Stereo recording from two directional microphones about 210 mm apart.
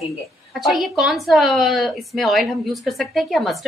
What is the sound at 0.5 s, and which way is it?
A woman's voice, centre (ahead or behind).